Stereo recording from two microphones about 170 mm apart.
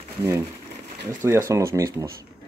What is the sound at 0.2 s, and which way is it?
Speech, 15° right (ahead or behind).